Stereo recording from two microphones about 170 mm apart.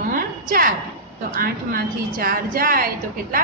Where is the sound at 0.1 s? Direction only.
60° right (ahead or behind).